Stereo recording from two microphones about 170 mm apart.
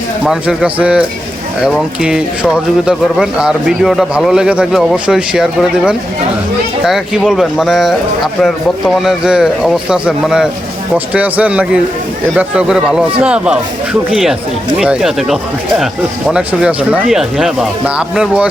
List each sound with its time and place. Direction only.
0.3 s speech: 5° right (ahead or behind)